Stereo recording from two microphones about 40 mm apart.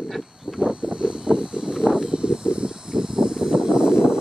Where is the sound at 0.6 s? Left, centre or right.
Right.